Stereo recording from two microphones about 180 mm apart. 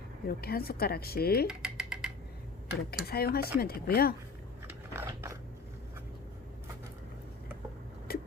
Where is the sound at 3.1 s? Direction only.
60° left (ahead or behind).